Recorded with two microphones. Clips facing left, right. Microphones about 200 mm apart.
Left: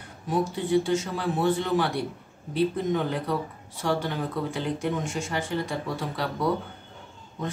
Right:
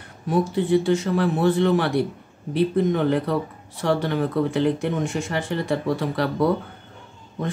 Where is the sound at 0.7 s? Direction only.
60° right (ahead or behind).